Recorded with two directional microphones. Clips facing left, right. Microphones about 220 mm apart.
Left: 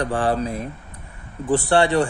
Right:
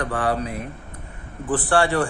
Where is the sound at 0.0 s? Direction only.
30° left (ahead or behind).